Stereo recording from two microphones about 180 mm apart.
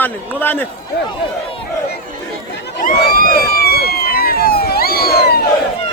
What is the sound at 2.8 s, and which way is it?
Police car, 50° left (ahead or behind).